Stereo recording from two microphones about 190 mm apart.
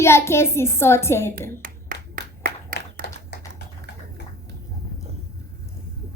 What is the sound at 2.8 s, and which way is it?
Clapping, 60° left (ahead or behind).